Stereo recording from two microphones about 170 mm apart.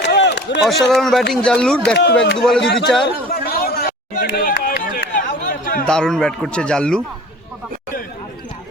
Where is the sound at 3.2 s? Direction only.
60° left (ahead or behind).